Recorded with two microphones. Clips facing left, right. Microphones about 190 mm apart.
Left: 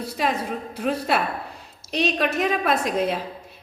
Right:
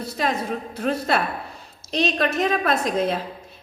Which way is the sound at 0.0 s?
10° left (ahead or behind).